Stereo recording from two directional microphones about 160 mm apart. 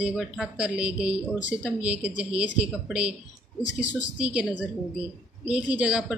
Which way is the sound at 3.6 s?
50° left (ahead or behind).